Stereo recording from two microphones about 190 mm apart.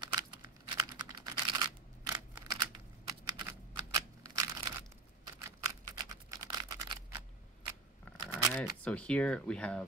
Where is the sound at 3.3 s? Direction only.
20° right (ahead or behind).